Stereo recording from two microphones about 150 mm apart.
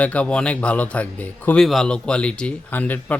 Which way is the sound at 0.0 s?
10° left (ahead or behind).